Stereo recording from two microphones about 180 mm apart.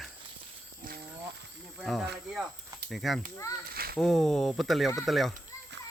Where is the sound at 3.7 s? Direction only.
55° right (ahead or behind).